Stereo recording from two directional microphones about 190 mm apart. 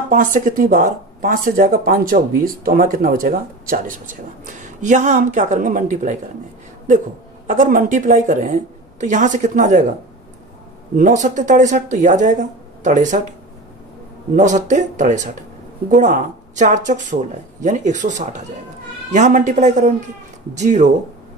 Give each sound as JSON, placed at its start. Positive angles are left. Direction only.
{"t": 0.1, "sound": "speech", "side_deg": -45}
{"t": 7.4, "sound": "speech", "side_deg": -45}
{"t": 11.0, "sound": "speech", "side_deg": -40}
{"t": 14.3, "sound": "speech", "side_deg": -40}